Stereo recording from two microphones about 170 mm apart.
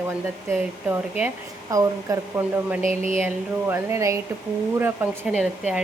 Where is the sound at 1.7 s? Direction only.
20° right (ahead or behind).